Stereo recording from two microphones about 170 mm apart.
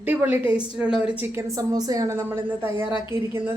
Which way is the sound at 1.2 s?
20° right (ahead or behind).